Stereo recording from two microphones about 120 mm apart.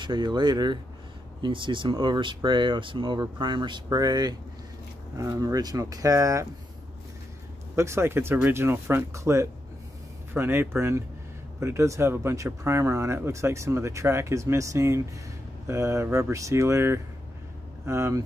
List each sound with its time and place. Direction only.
0.0 s speech: 40° right (ahead or behind)
7.7 s speech: 20° right (ahead or behind)